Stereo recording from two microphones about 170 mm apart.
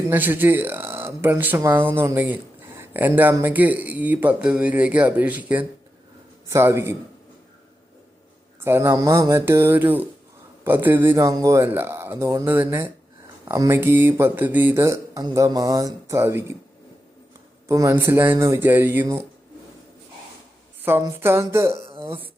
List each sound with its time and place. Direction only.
0.1 s speech: 10° right (ahead or behind)
8.6 s speech: 15° right (ahead or behind)
17.7 s speech: 15° right (ahead or behind)
20.8 s speech: 15° right (ahead or behind)